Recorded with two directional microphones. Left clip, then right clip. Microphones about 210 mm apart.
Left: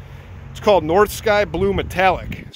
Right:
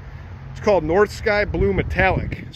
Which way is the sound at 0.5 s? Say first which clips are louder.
Left 3 dB; 10° left (ahead or behind).